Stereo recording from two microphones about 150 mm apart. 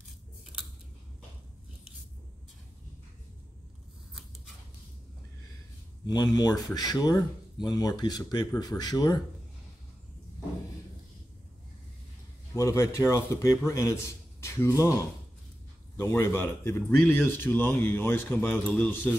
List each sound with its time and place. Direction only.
6.0 s speech: 25° left (ahead or behind)
12.5 s a man's voice: 20° left (ahead or behind)
16.0 s speech: 15° left (ahead or behind)